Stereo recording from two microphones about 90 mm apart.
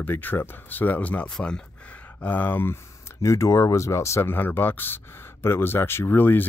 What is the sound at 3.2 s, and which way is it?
Speech, 35° left (ahead or behind).